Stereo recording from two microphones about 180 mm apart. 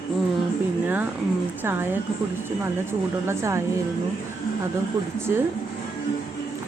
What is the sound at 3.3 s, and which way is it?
Speech, 15° right (ahead or behind).